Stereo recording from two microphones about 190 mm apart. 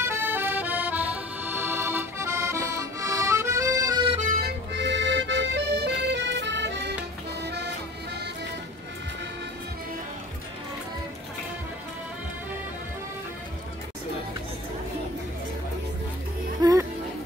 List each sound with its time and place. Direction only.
0.0 s accordion: 10° right (ahead or behind)
4.1 s accordion: 40° right (ahead or behind); by 7.0 s 65° right (ahead or behind)
7.4 s music: 60° right (ahead or behind)
16.6 s music: 20° right (ahead or behind)